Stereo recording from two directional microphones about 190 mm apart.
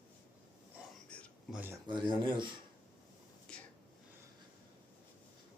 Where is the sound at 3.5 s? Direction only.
5° left (ahead or behind).